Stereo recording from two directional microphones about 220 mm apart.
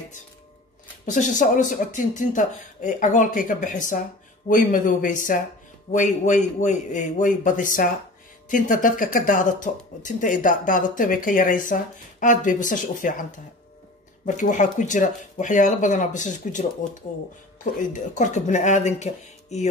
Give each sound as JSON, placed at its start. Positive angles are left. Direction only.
{"t": 1.0, "sound": "speech", "side_deg": 35}